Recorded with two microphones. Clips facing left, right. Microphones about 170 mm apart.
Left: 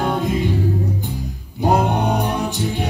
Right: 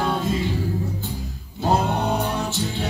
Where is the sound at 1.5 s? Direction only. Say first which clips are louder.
Left 4 dB; 15° left (ahead or behind).